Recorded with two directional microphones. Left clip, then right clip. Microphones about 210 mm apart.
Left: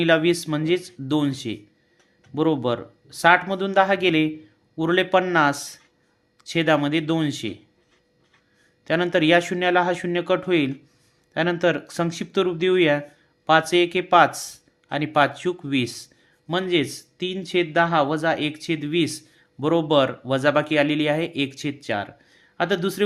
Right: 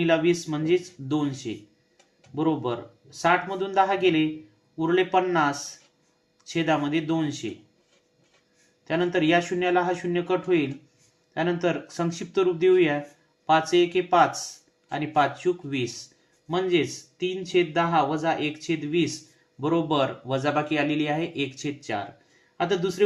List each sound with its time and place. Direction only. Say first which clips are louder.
0.0 s speech: left 3 dB; 55° left (ahead or behind)
8.8 s speech: left 4 dB; 50° left (ahead or behind)